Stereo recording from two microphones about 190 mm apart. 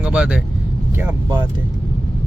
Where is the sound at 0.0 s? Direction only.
5° right (ahead or behind).